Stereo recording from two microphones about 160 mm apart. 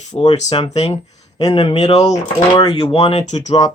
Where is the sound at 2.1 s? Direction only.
25° left (ahead or behind).